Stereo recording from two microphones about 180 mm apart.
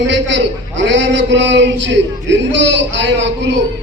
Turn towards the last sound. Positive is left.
turn(degrees=-80)